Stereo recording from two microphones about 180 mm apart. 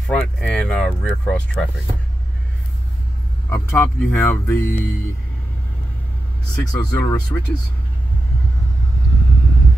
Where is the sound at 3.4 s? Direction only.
15° left (ahead or behind).